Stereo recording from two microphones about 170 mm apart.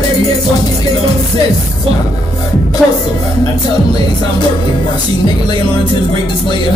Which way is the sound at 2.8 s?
Centre (ahead or behind).